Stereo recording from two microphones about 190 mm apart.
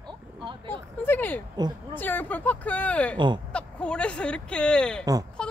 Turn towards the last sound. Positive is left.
turn(degrees=-20)  # may be behind; listen again after turning